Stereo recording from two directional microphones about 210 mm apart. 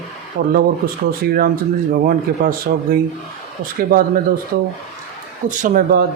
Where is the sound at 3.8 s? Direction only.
45° right (ahead or behind).